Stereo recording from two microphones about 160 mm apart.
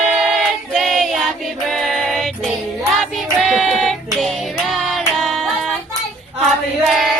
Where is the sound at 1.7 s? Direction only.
Centre (ahead or behind).